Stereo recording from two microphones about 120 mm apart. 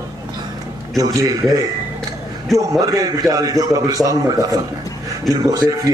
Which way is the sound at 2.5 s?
30° right (ahead or behind).